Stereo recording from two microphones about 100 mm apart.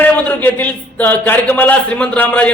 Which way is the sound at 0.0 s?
15° left (ahead or behind).